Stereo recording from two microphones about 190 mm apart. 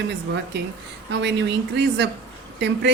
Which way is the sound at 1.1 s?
65° right (ahead or behind).